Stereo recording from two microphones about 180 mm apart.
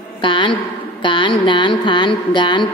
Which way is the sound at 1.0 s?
25° left (ahead or behind).